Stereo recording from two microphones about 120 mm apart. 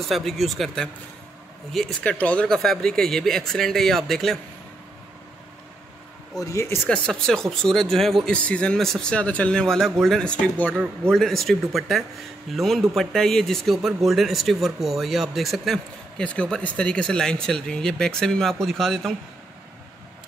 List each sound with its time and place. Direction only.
0.1 s speech: centre (ahead or behind)
6.3 s speech: 25° left (ahead or behind)
6.9 s speech: 5° left (ahead or behind)